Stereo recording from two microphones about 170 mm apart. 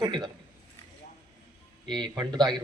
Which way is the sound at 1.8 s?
25° right (ahead or behind).